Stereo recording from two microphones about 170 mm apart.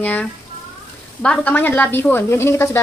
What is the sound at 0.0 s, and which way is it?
A woman's voice, 10° left (ahead or behind).